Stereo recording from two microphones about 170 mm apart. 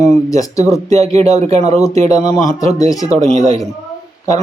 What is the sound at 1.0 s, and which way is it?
Speech, 40° right (ahead or behind).